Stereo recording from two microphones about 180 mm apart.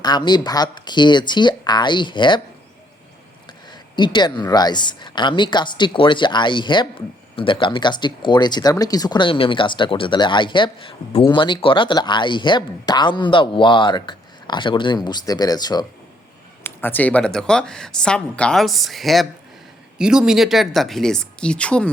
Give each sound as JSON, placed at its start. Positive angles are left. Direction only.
{"t": 0.0, "sound": "speech", "side_deg": 25}
{"t": 3.7, "sound": "speech", "side_deg": 25}
{"t": 16.6, "sound": "speech", "side_deg": 10}